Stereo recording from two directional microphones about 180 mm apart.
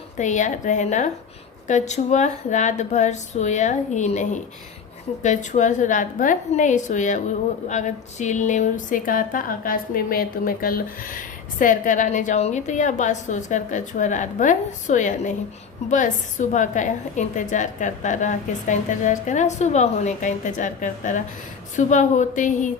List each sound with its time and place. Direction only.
0.2 s a woman's voice: 40° left (ahead or behind)